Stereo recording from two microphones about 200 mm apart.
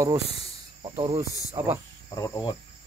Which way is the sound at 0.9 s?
20° right (ahead or behind).